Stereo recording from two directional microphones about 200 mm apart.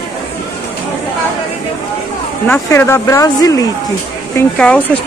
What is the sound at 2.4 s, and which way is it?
Speech, 10° left (ahead or behind).